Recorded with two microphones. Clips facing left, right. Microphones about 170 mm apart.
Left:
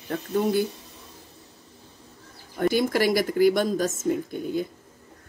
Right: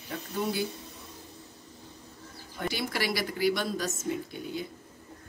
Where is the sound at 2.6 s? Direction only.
45° left (ahead or behind).